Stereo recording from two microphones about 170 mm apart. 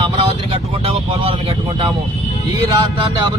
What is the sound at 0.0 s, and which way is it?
Vehicle, 30° right (ahead or behind).